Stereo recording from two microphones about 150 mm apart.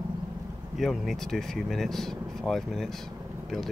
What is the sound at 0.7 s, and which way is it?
Speech, centre (ahead or behind).